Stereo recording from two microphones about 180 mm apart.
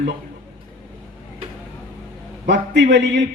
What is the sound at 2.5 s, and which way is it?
Speech, 75° right (ahead or behind).